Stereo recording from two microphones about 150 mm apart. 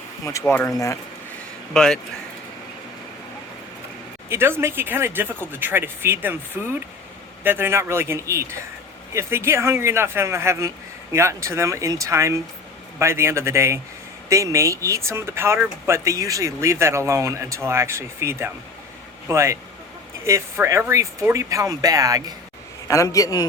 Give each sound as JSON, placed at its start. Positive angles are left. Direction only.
{"t": 0.3, "sound": "speech", "side_deg": 15}
{"t": 1.7, "sound": "speech", "side_deg": 5}
{"t": 4.3, "sound": "speech", "side_deg": -15}
{"t": 22.9, "sound": "a man's voice", "side_deg": 20}